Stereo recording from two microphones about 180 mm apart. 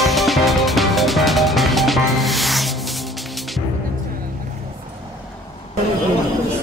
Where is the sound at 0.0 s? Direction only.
Centre (ahead or behind).